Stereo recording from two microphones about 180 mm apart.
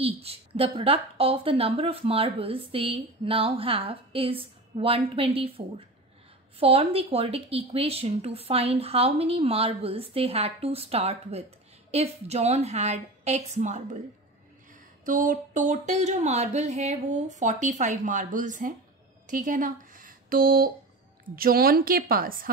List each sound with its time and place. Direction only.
0.0 s a woman's voice: 35° right (ahead or behind); by 22.5 s 50° right (ahead or behind)